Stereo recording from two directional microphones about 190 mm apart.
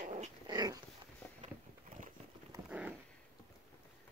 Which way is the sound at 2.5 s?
15° right (ahead or behind).